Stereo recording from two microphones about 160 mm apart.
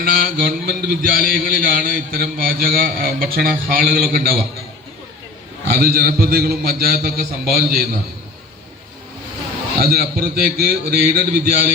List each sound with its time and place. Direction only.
0.0 s mantra: 65° right (ahead or behind)
5.7 s a man's voice: 70° right (ahead or behind)
9.7 s a man's voice: 70° right (ahead or behind)